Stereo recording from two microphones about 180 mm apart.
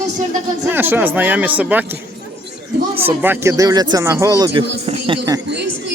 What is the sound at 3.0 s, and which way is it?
Speech, 10° right (ahead or behind).